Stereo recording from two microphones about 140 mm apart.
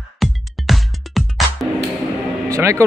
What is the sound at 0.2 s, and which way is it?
Music, centre (ahead or behind).